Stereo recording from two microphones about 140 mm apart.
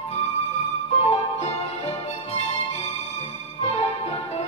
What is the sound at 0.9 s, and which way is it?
Music, 50° left (ahead or behind).